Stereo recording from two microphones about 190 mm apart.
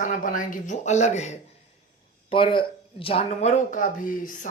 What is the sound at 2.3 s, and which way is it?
Speech, 25° left (ahead or behind).